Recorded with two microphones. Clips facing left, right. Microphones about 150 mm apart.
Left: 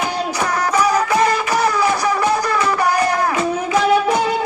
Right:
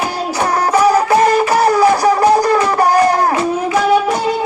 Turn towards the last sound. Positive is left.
turn(degrees=-40)  # may be behind; listen again after turning